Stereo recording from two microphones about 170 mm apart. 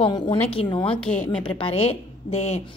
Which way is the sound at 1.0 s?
5° left (ahead or behind).